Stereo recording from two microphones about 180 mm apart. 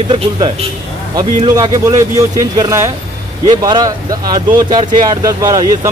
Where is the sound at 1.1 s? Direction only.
20° right (ahead or behind).